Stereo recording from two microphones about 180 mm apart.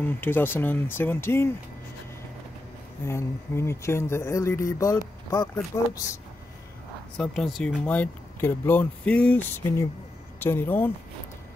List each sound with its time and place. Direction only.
0.0 s speech: 10° left (ahead or behind)
3.1 s speech: 15° left (ahead or behind)
7.2 s speech: 5° left (ahead or behind)